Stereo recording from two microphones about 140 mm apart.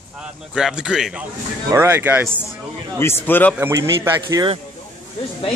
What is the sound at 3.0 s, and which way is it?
Speech, 15° left (ahead or behind).